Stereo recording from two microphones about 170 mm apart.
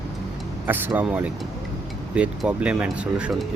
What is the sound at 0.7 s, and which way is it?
Speech, 10° right (ahead or behind).